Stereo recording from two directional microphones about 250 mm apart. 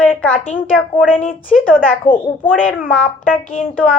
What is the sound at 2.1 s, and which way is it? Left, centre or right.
Speech, left.